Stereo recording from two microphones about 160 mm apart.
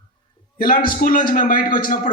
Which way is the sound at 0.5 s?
65° left (ahead or behind).